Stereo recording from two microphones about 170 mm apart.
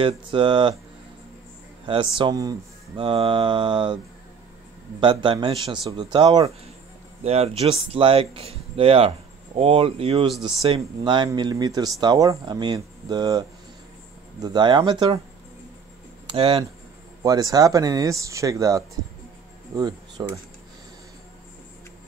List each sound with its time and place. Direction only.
0.0 s speech: 30° right (ahead or behind)
1.9 s speech: 30° right (ahead or behind)
5.0 s speech: 30° right (ahead or behind)
16.3 s speech: 30° right (ahead or behind)